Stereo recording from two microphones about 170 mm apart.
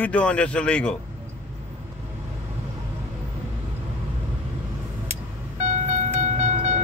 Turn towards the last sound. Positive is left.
turn(degrees=-45)  # may be behind; listen again after turning